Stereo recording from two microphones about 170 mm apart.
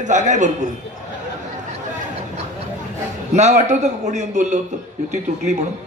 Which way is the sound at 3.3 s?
45° right (ahead or behind).